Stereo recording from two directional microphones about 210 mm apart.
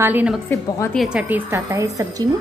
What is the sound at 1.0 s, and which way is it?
A woman's voice, 5° right (ahead or behind).